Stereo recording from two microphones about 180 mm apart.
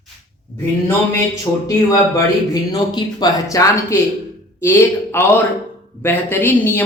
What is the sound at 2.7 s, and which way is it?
Speech, 25° left (ahead or behind).